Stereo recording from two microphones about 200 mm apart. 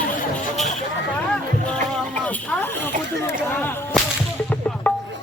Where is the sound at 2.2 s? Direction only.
10° left (ahead or behind).